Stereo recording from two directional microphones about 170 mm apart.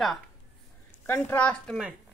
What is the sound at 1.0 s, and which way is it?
Speech, 10° left (ahead or behind).